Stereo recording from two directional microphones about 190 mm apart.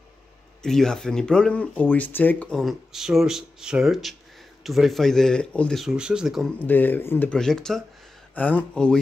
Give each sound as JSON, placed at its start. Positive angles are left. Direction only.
{"t": 0.6, "sound": "speech", "side_deg": 5}
{"t": 6.6, "sound": "speech", "side_deg": 10}